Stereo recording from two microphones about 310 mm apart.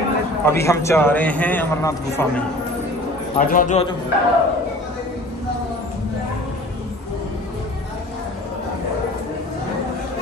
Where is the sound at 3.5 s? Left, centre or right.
Left.